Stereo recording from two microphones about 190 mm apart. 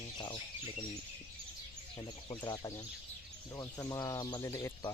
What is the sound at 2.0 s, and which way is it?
Speech, 20° left (ahead or behind).